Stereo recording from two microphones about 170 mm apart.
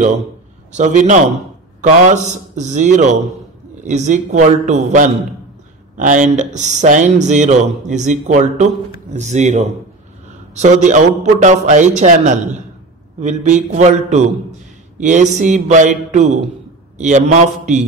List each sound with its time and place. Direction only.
0.7 s speech: 45° right (ahead or behind)